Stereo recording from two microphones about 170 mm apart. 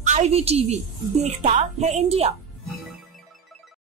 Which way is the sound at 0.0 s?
45° right (ahead or behind).